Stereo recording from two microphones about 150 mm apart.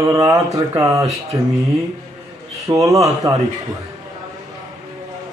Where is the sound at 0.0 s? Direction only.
20° right (ahead or behind).